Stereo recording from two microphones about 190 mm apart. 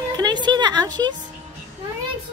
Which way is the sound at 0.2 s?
25° right (ahead or behind).